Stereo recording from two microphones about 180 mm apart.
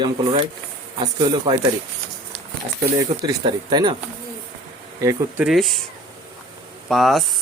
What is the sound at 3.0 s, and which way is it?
Speech, 25° right (ahead or behind).